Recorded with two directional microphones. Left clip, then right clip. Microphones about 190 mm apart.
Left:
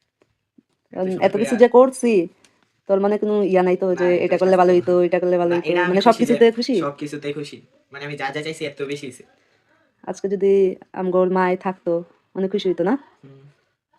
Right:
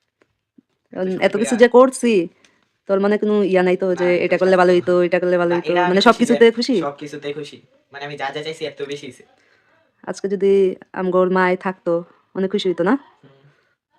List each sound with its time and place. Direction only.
0.9 s speech: 15° right (ahead or behind)
5.9 s speech: 30° right (ahead or behind)
6.8 s speech: 10° right (ahead or behind)
13.2 s a sound: 15° right (ahead or behind)